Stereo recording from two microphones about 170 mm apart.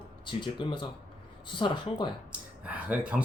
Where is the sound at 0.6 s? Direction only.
30° left (ahead or behind).